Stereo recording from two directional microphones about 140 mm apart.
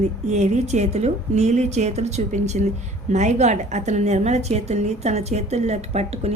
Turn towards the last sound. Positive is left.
turn(degrees=-50)  # may be behind; listen again after turning